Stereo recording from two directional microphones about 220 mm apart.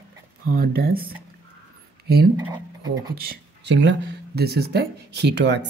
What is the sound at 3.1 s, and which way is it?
Speech, 45° right (ahead or behind).